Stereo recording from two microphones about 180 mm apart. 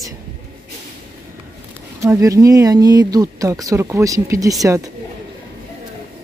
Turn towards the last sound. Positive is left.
turn(degrees=-20)  # may be behind; listen again after turning